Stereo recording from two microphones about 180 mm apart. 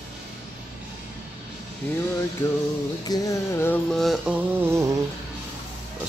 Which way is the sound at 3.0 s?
20° left (ahead or behind).